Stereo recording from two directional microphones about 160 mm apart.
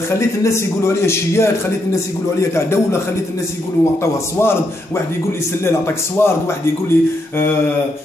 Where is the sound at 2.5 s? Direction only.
15° left (ahead or behind).